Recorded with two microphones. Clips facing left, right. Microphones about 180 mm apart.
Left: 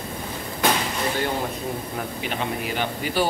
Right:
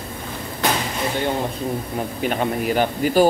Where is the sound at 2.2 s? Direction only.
45° right (ahead or behind).